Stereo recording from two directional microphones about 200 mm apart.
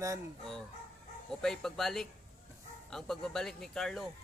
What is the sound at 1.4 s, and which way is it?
Speech, centre (ahead or behind).